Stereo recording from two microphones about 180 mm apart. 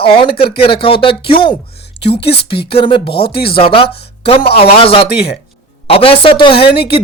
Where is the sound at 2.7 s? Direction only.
30° left (ahead or behind).